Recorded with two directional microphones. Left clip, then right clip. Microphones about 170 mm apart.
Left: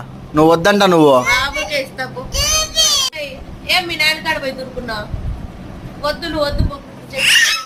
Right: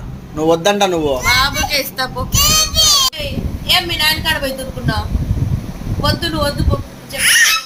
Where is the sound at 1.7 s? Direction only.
50° right (ahead or behind).